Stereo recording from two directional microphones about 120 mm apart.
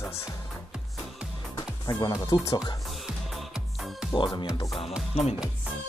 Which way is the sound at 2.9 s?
Centre (ahead or behind).